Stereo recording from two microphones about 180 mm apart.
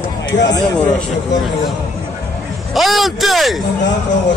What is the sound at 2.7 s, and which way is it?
Speech, centre (ahead or behind).